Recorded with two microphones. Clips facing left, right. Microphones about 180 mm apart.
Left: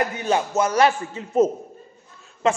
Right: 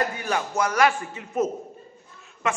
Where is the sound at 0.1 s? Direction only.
20° left (ahead or behind).